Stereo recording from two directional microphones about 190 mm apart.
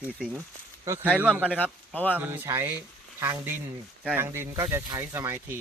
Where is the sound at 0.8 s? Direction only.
10° right (ahead or behind).